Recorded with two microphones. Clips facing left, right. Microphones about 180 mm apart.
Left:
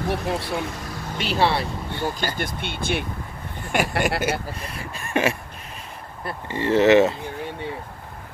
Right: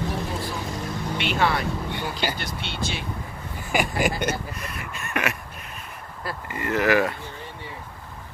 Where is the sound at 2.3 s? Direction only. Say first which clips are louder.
Left 3 dB; 50° left (ahead or behind).